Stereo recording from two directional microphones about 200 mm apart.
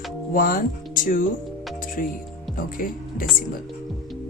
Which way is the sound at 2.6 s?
45° left (ahead or behind).